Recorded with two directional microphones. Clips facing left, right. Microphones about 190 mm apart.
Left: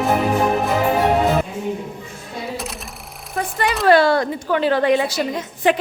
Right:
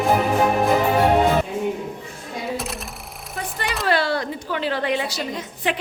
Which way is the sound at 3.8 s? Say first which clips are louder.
Left 8 dB; 50° left (ahead or behind).